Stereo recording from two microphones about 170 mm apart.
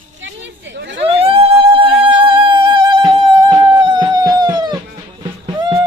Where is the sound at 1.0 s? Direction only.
35° right (ahead or behind).